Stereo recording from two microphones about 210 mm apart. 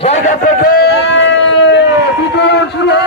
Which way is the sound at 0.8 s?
60° left (ahead or behind).